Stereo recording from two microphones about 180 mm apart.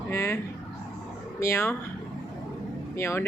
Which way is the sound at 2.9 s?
15° left (ahead or behind).